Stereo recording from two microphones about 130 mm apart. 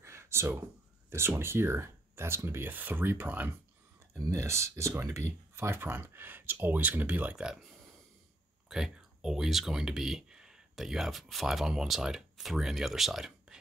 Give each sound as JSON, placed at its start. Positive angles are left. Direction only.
{"t": 0.0, "sound": "a sound", "side_deg": -20}
{"t": 1.1, "sound": "speech", "side_deg": -20}
{"t": 8.6, "sound": "speech", "side_deg": -5}